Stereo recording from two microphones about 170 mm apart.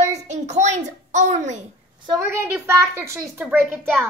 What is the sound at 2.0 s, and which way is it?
A woman's voice, 20° right (ahead or behind).